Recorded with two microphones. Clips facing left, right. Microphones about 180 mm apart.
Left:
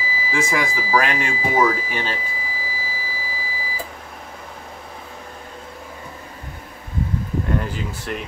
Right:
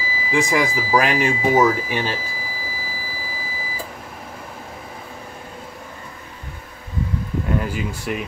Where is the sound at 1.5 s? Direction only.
5° right (ahead or behind).